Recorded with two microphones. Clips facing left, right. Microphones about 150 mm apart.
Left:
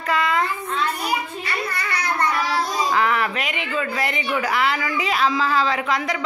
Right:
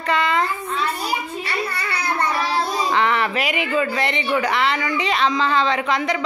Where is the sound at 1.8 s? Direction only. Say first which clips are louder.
Even; 30° right (ahead or behind).